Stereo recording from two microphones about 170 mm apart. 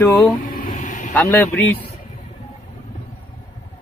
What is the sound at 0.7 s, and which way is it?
Vehicle, 50° left (ahead or behind).